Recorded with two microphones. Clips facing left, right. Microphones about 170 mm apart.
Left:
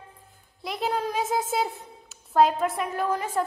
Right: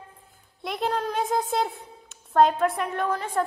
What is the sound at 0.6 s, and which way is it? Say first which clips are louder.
A woman's voice: right 1 dB; centre (ahead or behind).